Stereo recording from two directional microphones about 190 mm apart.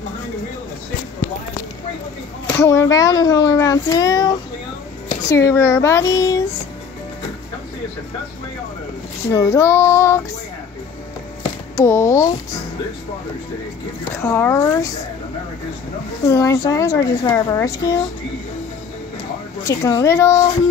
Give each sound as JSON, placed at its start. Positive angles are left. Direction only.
{"t": 2.6, "sound": "speech", "side_deg": 15}
{"t": 9.3, "sound": "speech", "side_deg": 15}
{"t": 11.7, "sound": "speech", "side_deg": 15}
{"t": 14.1, "sound": "speech", "side_deg": 15}
{"t": 16.3, "sound": "speech", "side_deg": 15}
{"t": 19.6, "sound": "speech", "side_deg": 20}